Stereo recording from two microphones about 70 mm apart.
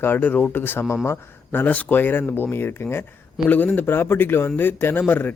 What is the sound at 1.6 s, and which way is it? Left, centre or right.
Speech, left.